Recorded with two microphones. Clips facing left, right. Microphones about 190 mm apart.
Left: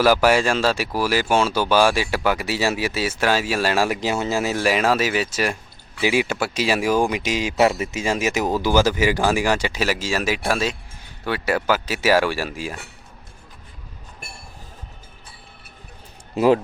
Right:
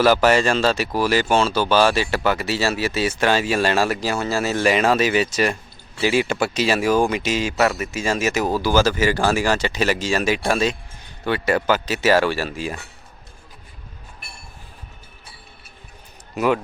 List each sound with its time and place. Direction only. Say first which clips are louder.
0.0 s speech: right 1 dB; 10° left (ahead or behind)
7.6 s speech: left 4 dB; 25° left (ahead or behind); by 12.7 s 10° left (ahead or behind)
16.3 s speech: left 4 dB; 30° left (ahead or behind)